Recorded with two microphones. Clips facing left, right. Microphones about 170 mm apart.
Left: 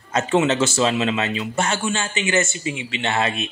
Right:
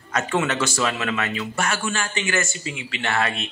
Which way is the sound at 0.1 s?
25° left (ahead or behind).